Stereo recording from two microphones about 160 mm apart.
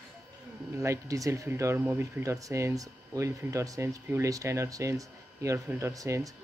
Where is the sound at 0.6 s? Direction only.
20° right (ahead or behind).